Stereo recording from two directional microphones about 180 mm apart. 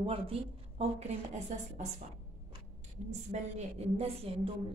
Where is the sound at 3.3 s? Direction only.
35° right (ahead or behind).